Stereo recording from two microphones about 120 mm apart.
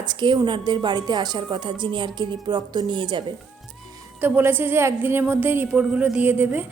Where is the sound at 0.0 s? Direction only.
40° right (ahead or behind).